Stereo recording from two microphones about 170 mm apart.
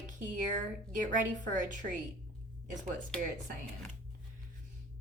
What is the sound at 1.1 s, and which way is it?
Speech, 50° right (ahead or behind).